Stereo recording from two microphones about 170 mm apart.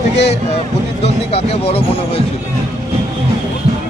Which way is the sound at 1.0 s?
35° left (ahead or behind).